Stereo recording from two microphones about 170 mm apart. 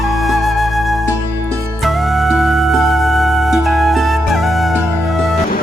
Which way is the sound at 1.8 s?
Centre (ahead or behind).